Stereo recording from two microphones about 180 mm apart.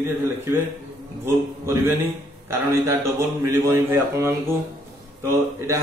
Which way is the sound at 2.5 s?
15° right (ahead or behind).